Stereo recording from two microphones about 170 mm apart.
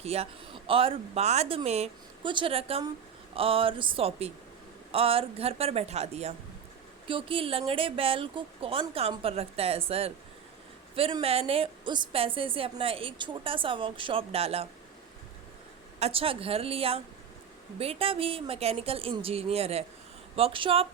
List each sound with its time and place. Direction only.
0.0 s a woman's voice: 35° right (ahead or behind)
16.0 s a woman's voice: 35° right (ahead or behind)